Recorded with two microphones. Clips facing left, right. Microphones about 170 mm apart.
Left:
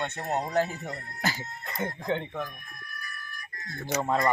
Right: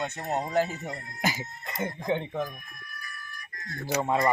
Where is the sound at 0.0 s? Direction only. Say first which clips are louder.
Even; 5° right (ahead or behind).